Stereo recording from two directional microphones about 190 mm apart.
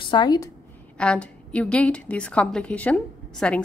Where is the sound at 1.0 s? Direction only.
5° left (ahead or behind).